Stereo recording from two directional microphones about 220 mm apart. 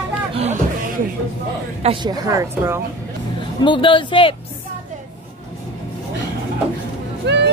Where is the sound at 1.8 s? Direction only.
20° right (ahead or behind).